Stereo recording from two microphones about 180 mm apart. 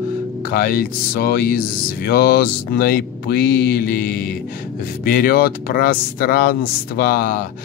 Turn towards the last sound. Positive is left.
turn(degrees=50)  # may be behind; listen again after turning